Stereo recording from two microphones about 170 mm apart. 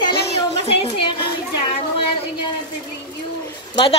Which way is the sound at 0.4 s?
30° left (ahead or behind).